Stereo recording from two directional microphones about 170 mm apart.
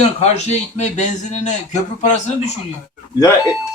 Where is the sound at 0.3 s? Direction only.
40° left (ahead or behind).